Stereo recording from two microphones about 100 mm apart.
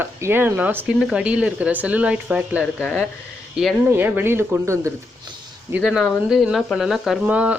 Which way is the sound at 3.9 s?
20° right (ahead or behind).